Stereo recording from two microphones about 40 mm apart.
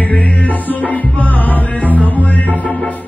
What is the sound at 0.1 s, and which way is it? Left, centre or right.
Music, left.